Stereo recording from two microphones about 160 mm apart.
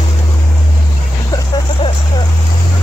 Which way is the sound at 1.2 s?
25° left (ahead or behind).